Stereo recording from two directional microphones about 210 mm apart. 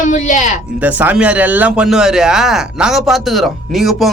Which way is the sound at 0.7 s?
10° right (ahead or behind).